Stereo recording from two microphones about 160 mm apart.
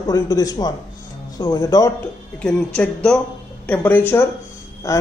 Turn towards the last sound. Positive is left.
turn(degrees=20)  # may be behind; listen again after turning